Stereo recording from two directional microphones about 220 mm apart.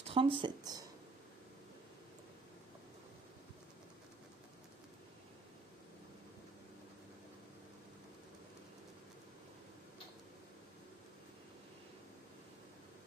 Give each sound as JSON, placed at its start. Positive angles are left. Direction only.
{"t": 0.0, "sound": "speech", "side_deg": -25}